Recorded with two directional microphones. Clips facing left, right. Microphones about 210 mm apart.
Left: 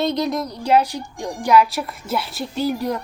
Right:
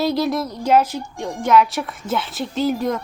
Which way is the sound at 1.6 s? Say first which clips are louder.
Even; centre (ahead or behind).